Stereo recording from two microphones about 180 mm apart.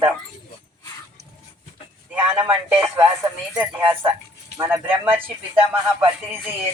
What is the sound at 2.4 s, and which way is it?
Speech, 10° right (ahead or behind).